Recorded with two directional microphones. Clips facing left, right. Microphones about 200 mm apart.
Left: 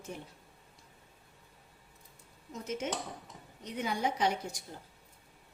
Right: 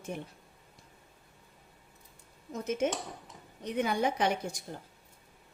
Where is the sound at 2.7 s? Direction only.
50° right (ahead or behind).